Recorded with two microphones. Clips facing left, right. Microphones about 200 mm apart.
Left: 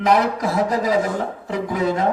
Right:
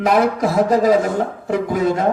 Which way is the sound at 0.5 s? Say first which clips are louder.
Right 5 dB; 50° right (ahead or behind).